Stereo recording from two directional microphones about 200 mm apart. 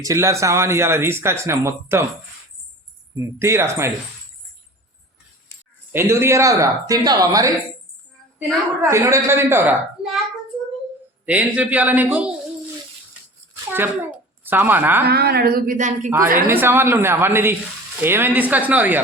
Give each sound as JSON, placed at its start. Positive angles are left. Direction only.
{"t": 0.0, "sound": "speech", "side_deg": -15}
{"t": 3.2, "sound": "speech", "side_deg": -15}
{"t": 5.9, "sound": "speech", "side_deg": -10}
{"t": 11.3, "sound": "speech", "side_deg": -5}
{"t": 13.7, "sound": "a child's voice", "side_deg": -10}
{"t": 15.0, "sound": "speech", "side_deg": -50}
{"t": 16.0, "sound": "speech", "side_deg": -10}